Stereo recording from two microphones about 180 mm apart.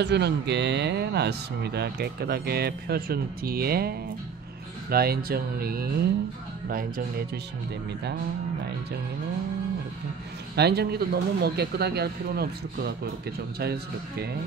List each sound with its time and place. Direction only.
0.0 s speech: 70° right (ahead or behind); by 7.2 s 55° right (ahead or behind)
10.5 s speech: 65° right (ahead or behind)